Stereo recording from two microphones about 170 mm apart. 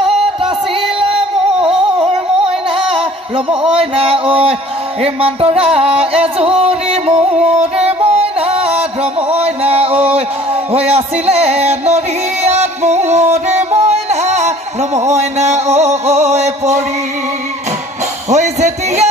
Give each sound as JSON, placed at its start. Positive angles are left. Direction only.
{"t": 1.1, "sound": "a sound", "side_deg": -5}
{"t": 3.3, "sound": "speech", "side_deg": -35}
{"t": 5.0, "sound": "music", "side_deg": -35}
{"t": 10.1, "sound": "speech", "side_deg": -35}
{"t": 12.4, "sound": "music", "side_deg": -40}
{"t": 18.3, "sound": "a sound", "side_deg": -40}